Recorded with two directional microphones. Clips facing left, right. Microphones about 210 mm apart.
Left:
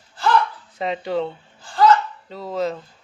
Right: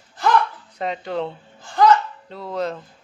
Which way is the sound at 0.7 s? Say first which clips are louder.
Left 2 dB; centre (ahead or behind).